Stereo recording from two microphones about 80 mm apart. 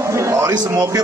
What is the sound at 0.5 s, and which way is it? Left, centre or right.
Speech, right.